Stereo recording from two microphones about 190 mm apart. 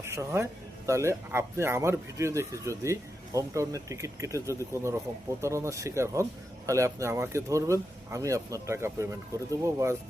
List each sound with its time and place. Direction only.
0.0 s a man's voice: 15° right (ahead or behind)